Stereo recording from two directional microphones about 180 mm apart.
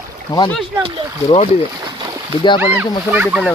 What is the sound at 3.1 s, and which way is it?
Speech, 5° right (ahead or behind).